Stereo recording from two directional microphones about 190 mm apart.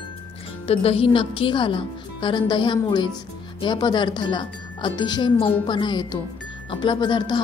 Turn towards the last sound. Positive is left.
turn(degrees=25)  # may be behind; listen again after turning